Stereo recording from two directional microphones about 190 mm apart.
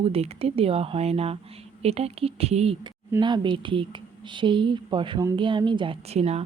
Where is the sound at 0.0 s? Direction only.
30° right (ahead or behind).